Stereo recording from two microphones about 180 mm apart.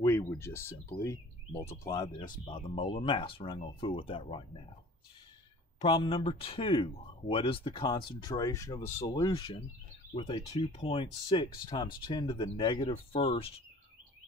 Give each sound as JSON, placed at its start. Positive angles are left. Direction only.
{"t": 0.0, "sound": "speech", "side_deg": 15}
{"t": 2.1, "sound": "speech", "side_deg": 25}
{"t": 5.8, "sound": "speech", "side_deg": 30}